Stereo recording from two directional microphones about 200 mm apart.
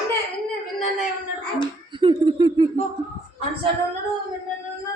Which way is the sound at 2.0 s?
25° right (ahead or behind).